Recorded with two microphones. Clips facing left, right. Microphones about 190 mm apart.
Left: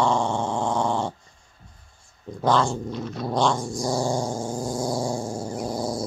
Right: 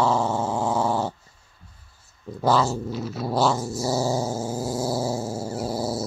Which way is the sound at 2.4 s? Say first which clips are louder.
Even; 5° right (ahead or behind).